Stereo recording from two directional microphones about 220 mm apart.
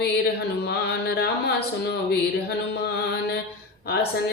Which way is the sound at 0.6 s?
50° left (ahead or behind).